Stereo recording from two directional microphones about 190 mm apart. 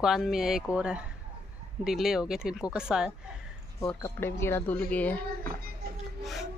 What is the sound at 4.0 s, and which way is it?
Speech, 15° left (ahead or behind).